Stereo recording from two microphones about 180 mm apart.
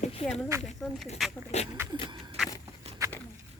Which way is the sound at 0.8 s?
5° left (ahead or behind).